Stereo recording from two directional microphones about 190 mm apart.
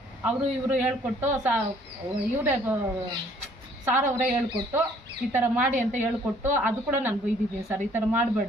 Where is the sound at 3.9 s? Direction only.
10° right (ahead or behind).